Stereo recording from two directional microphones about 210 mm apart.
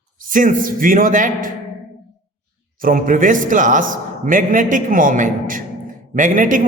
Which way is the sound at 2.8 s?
40° right (ahead or behind).